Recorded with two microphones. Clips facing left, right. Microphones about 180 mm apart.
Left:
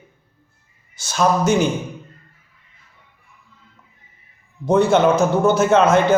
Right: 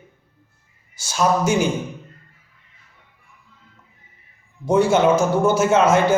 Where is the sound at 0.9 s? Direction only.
60° left (ahead or behind).